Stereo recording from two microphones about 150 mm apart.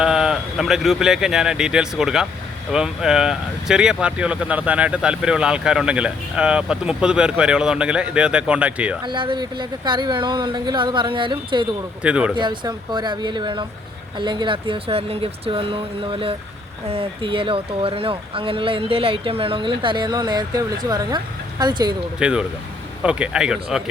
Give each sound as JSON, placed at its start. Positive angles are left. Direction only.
{"t": 0.0, "sound": "speech", "side_deg": -5}
{"t": 9.0, "sound": "speech", "side_deg": -30}
{"t": 12.0, "sound": "speech", "side_deg": -10}
{"t": 12.4, "sound": "speech", "side_deg": -30}
{"t": 22.2, "sound": "speech", "side_deg": -5}